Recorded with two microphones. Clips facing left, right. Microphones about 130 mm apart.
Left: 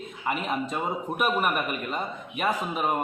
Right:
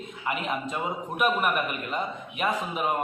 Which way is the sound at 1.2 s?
Centre (ahead or behind).